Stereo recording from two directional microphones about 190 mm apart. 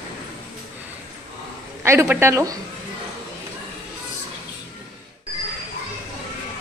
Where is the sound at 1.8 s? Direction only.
15° right (ahead or behind).